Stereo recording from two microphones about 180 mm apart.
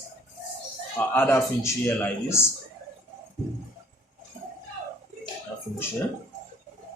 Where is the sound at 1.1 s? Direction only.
10° left (ahead or behind).